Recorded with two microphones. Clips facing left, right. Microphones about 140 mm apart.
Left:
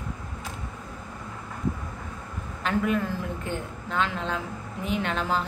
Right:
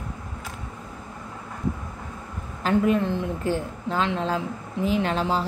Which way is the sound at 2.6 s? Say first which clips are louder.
Right 5 dB; 30° right (ahead or behind).